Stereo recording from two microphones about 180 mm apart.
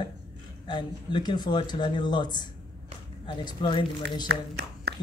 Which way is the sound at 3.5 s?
25° left (ahead or behind).